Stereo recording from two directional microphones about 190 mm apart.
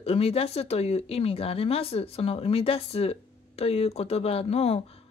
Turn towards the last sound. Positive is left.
turn(degrees=30)  # may be behind; listen again after turning